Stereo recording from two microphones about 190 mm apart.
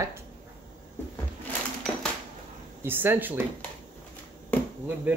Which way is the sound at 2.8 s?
10° right (ahead or behind).